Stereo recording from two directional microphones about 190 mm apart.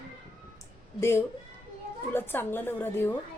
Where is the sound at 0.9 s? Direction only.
15° left (ahead or behind).